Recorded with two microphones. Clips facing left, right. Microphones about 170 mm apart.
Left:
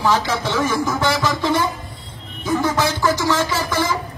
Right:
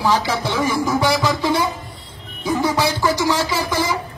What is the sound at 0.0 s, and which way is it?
A man's voice, 15° right (ahead or behind).